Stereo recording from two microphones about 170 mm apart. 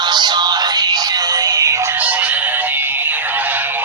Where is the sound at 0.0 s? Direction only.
25° right (ahead or behind).